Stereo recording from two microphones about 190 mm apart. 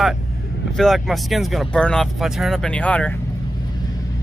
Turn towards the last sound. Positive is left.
turn(degrees=5)  # may be behind; listen again after turning